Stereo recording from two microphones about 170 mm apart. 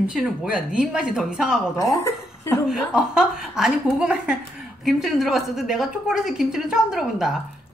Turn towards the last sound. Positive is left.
turn(degrees=-5)  # may be behind; listen again after turning